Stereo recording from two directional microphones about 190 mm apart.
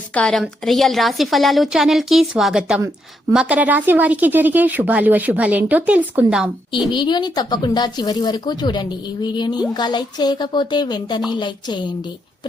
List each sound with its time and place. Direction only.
0.1 s a woman's voice: 5° left (ahead or behind)
6.9 s speech: 25° left (ahead or behind)